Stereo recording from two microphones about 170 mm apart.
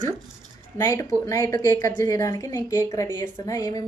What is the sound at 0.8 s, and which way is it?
A woman's voice, 15° left (ahead or behind).